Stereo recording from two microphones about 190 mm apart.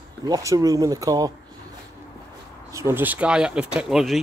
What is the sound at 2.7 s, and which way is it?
Speech, 10° right (ahead or behind).